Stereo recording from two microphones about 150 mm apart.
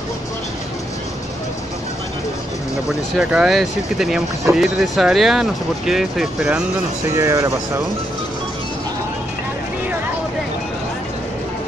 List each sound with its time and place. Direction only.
3.2 s speech: 5° right (ahead or behind)
7.2 s speech: 20° right (ahead or behind)